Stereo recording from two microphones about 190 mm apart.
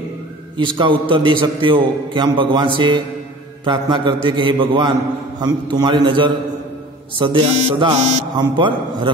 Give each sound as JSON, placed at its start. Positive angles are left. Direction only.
{"t": 0.6, "sound": "a man's voice", "side_deg": -25}